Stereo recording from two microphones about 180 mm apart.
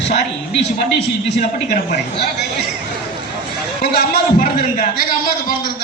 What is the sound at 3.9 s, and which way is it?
A man's voice, 55° left (ahead or behind).